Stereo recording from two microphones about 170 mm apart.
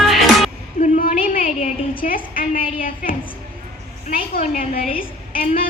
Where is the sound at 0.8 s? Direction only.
50° left (ahead or behind).